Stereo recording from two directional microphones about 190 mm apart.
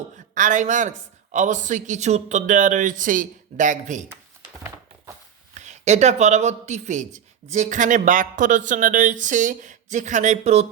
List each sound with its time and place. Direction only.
0.3 s speech: 40° right (ahead or behind)
5.5 s speech: 35° right (ahead or behind)